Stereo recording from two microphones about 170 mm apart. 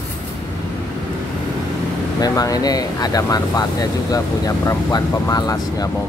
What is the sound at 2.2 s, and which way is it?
Speech, 20° left (ahead or behind).